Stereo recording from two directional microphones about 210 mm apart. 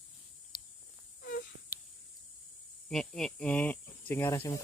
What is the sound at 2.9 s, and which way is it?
Speech, centre (ahead or behind).